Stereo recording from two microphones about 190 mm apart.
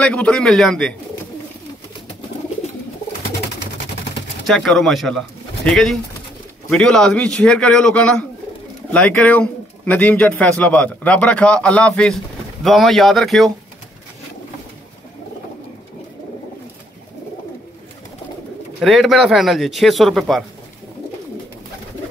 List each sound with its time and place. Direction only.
0.0 s a man's voice: 5° left (ahead or behind)
4.5 s a man's voice: centre (ahead or behind)
18.8 s a man's voice: centre (ahead or behind)